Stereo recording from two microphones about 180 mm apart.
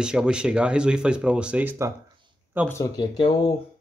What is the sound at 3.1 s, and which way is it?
Speech, 25° left (ahead or behind).